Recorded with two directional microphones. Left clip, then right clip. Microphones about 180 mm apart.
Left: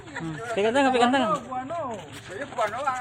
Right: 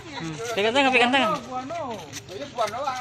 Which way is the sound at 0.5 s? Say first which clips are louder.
Right 2 dB; 25° left (ahead or behind).